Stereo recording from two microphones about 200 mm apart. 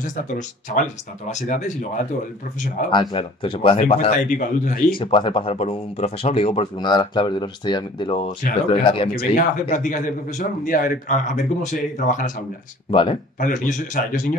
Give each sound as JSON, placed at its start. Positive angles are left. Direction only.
{"t": 1.3, "sound": "a man's voice", "side_deg": 35}
{"t": 2.9, "sound": "speech", "side_deg": 25}
{"t": 4.9, "sound": "speech", "side_deg": 25}
{"t": 9.1, "sound": "a man's voice", "side_deg": 50}
{"t": 12.9, "sound": "speech", "side_deg": 25}
{"t": 13.4, "sound": "a man's voice", "side_deg": 40}